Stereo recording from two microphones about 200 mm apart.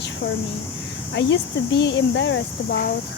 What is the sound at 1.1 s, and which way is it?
Speech, 60° left (ahead or behind).